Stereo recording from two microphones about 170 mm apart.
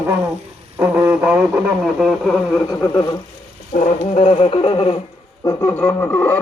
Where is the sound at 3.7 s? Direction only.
40° left (ahead or behind).